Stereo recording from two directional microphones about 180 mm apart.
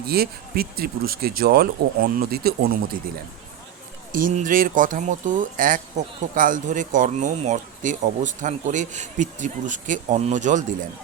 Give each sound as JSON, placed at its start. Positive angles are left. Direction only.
{"t": 0.1, "sound": "speech", "side_deg": -55}
{"t": 4.1, "sound": "speech", "side_deg": -45}